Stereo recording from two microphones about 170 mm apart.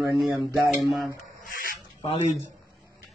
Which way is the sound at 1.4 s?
55° left (ahead or behind).